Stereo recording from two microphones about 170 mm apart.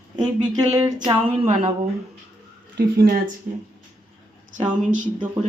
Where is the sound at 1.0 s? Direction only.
30° right (ahead or behind).